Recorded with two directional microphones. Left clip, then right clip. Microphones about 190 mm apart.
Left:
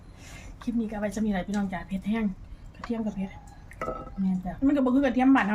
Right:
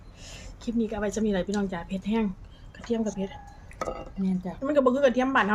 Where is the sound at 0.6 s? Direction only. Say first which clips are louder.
Right 2 dB; 20° right (ahead or behind).